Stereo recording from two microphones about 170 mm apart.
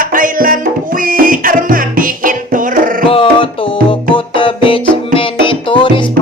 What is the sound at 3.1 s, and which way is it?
Music, 30° left (ahead or behind).